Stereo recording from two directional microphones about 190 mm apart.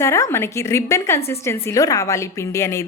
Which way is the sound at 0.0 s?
15° left (ahead or behind).